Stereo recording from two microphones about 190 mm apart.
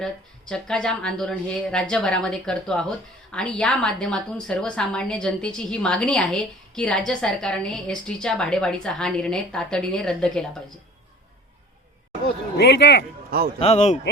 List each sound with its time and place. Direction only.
0.0 s a woman's voice: 5° left (ahead or behind)
12.5 s speech: 60° left (ahead or behind)
13.6 s speech: 35° left (ahead or behind)